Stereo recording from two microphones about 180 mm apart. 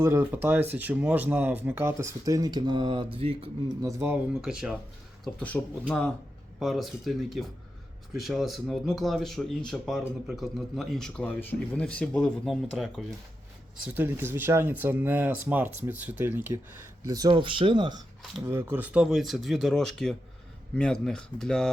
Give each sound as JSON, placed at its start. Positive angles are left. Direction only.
{"t": 0.0, "sound": "speech", "side_deg": -15}
{"t": 4.4, "sound": "speech", "side_deg": -5}
{"t": 5.2, "sound": "speech", "side_deg": 5}
{"t": 6.6, "sound": "speech", "side_deg": 0}
{"t": 18.4, "sound": "speech", "side_deg": -15}